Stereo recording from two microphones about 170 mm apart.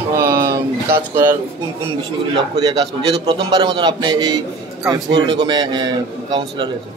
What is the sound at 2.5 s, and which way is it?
A man's voice, 25° right (ahead or behind).